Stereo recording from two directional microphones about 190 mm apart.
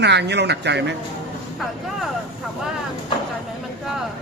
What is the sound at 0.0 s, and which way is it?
Speech, 65° right (ahead or behind).